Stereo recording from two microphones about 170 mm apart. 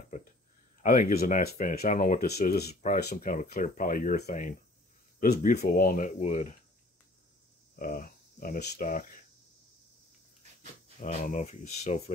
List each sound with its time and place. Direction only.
0.8 s speech: 50° left (ahead or behind)
2.7 s speech: 45° left (ahead or behind)
7.7 s speech: 55° left (ahead or behind)
11.0 s speech: 45° left (ahead or behind)